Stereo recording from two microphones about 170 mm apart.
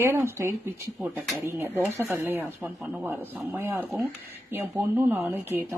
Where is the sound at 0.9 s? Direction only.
5° right (ahead or behind).